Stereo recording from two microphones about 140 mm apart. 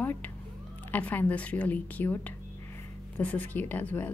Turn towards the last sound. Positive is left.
turn(degrees=15)  # may be behind; listen again after turning